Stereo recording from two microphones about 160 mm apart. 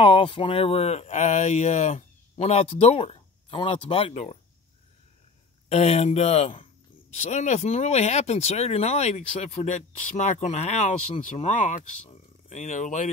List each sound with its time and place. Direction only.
0.0 s speech: 35° left (ahead or behind)
5.7 s speech: 40° left (ahead or behind)